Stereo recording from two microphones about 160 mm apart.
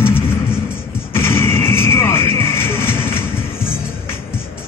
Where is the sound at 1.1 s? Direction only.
15° left (ahead or behind).